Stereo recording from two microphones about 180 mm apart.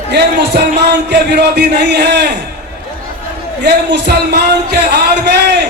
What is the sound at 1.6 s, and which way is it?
Speech, 65° right (ahead or behind).